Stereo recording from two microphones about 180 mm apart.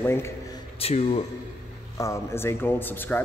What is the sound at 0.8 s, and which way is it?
Speech, 35° left (ahead or behind).